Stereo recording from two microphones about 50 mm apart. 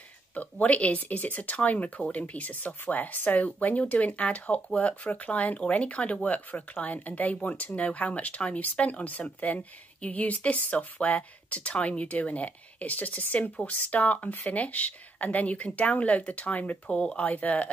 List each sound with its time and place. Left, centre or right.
0.3 s speech: left
17.3 s speech: left